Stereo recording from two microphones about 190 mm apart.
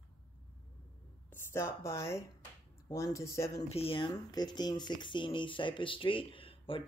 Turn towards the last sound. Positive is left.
turn(degrees=30)  # may be behind; listen again after turning